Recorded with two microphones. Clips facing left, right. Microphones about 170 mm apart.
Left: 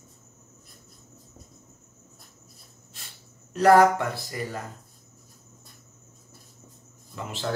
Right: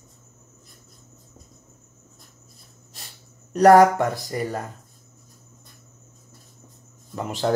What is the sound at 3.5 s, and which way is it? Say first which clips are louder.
Speech: right 4 dB; 45° right (ahead or behind).